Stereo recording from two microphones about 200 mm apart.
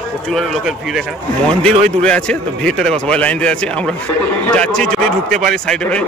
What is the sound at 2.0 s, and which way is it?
A man's voice, 5° left (ahead or behind).